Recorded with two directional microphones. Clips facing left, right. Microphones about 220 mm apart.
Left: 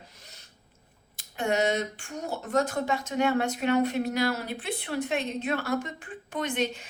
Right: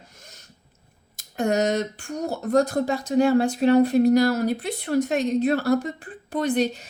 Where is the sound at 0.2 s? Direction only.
45° right (ahead or behind).